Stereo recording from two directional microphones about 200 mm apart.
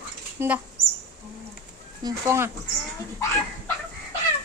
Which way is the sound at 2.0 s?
15° right (ahead or behind).